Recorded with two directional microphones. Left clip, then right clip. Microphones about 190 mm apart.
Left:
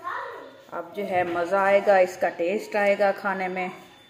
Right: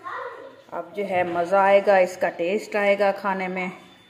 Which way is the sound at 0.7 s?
10° right (ahead or behind).